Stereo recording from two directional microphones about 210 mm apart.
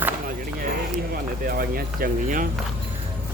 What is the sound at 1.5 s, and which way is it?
Speech, 45° right (ahead or behind).